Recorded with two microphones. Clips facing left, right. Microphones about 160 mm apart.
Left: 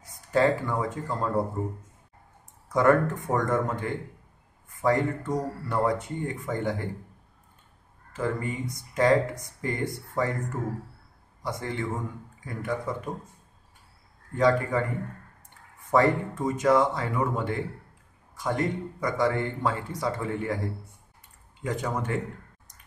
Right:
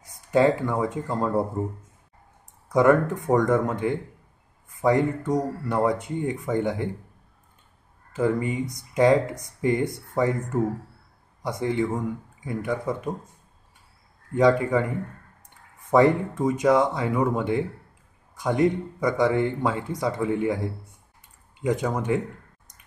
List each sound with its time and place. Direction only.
0.3 s speech: 20° right (ahead or behind)
2.7 s speech: 15° right (ahead or behind)
8.2 s speech: 15° right (ahead or behind)
14.3 s speech: 15° right (ahead or behind)
15.9 s speech: 15° right (ahead or behind)
21.6 s speech: 20° right (ahead or behind)